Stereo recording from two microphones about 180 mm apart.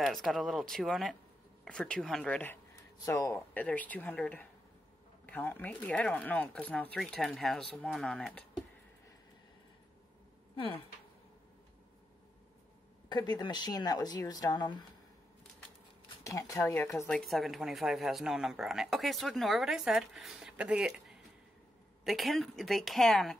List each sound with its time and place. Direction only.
0.0 s speech: centre (ahead or behind)
13.1 s speech: 25° left (ahead or behind)
16.3 s speech: 20° left (ahead or behind)
17.2 s speech: centre (ahead or behind)